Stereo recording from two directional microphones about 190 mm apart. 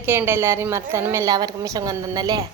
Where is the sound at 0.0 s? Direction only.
10° right (ahead or behind).